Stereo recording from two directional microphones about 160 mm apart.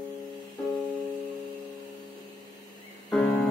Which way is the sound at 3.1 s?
5° left (ahead or behind).